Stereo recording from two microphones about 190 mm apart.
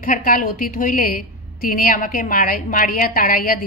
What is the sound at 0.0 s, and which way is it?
A woman's voice, 45° left (ahead or behind).